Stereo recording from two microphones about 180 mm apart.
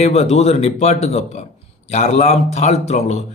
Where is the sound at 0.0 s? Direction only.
35° left (ahead or behind).